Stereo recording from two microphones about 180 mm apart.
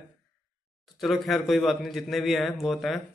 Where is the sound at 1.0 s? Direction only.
Centre (ahead or behind).